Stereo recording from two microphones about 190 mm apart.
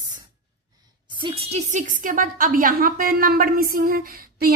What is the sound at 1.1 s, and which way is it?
A woman's voice, 25° right (ahead or behind).